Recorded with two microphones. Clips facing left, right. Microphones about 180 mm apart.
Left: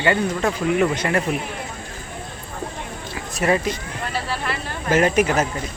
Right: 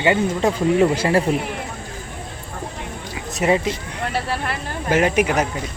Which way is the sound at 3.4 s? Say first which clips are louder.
Right 1 dB; 20° right (ahead or behind).